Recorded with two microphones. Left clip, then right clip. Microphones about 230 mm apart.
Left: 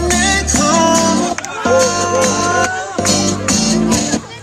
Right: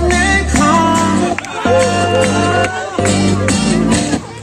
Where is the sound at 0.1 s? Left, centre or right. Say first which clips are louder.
Left 1 dB; left.